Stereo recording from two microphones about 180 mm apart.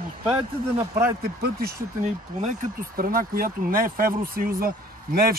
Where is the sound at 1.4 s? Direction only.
55° right (ahead or behind).